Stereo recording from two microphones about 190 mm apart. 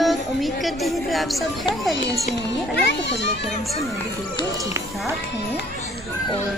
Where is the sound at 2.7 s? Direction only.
65° left (ahead or behind).